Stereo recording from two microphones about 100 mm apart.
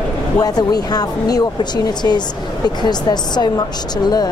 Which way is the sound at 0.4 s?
40° left (ahead or behind).